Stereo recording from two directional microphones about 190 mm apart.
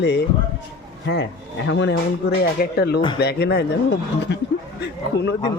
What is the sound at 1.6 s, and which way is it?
Speech, 65° left (ahead or behind).